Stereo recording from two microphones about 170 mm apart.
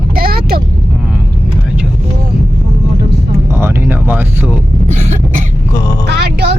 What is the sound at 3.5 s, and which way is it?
Vehicle, 15° right (ahead or behind).